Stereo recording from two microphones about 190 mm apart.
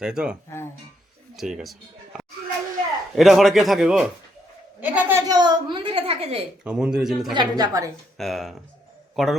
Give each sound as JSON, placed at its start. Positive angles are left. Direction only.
{"t": 0.0, "sound": "speech", "side_deg": -5}
{"t": 1.4, "sound": "speech", "side_deg": 0}
{"t": 3.2, "sound": "speech", "side_deg": 0}
{"t": 4.8, "sound": "a sound", "side_deg": -10}
{"t": 6.7, "sound": "speech", "side_deg": -5}
{"t": 7.3, "sound": "a woman's voice", "side_deg": -20}
{"t": 8.2, "sound": "a man's voice", "side_deg": 0}